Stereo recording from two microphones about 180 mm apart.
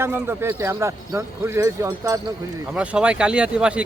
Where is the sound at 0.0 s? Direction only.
15° right (ahead or behind).